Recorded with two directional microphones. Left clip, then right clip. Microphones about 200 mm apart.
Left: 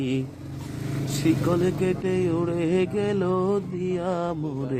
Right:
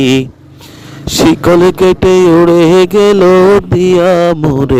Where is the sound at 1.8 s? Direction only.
50° right (ahead or behind).